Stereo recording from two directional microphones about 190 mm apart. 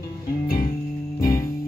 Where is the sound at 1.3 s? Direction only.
20° left (ahead or behind).